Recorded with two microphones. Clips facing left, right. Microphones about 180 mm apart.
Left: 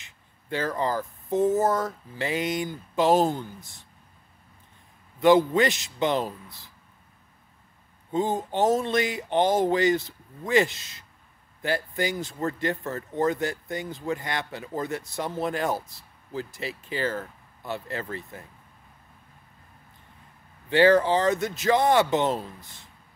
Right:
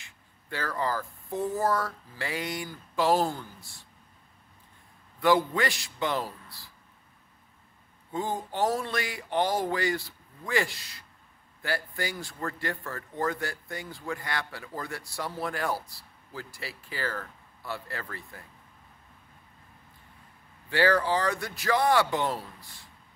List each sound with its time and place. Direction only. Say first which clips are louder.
0.0 s speech: left 1 dB; 20° left (ahead or behind)
5.2 s speech: left 6 dB; 20° left (ahead or behind)
8.1 s speech: left 6 dB; 20° left (ahead or behind)
20.7 s speech: left 6 dB; 20° left (ahead or behind)